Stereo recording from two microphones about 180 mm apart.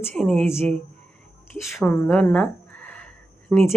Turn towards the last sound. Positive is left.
turn(degrees=10)  # may be behind; listen again after turning